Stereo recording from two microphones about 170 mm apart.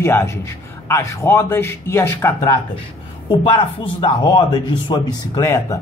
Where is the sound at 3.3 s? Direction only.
30° left (ahead or behind).